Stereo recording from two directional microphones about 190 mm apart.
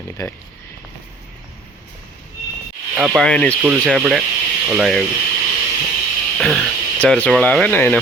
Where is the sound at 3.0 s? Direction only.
5° right (ahead or behind).